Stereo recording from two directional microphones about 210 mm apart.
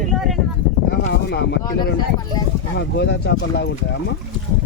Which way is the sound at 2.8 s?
55° left (ahead or behind).